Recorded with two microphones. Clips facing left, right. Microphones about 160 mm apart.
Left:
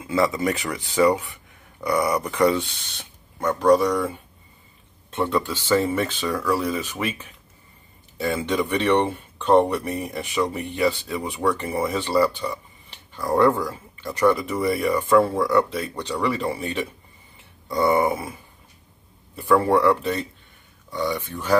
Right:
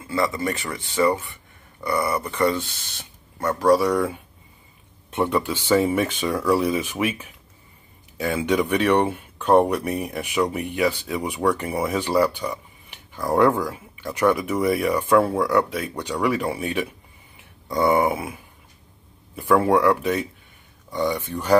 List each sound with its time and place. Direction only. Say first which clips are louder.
0.4 s speech: left 2 dB; centre (ahead or behind)
5.1 s speech: right 1 dB; 15° right (ahead or behind)
19.5 s speech: even; 5° right (ahead or behind)